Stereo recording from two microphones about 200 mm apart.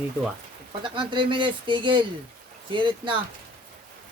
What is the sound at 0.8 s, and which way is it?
Speech, 25° right (ahead or behind).